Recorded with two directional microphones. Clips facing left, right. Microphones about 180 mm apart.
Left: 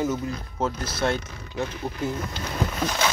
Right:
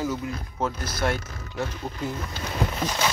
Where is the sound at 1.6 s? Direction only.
Centre (ahead or behind).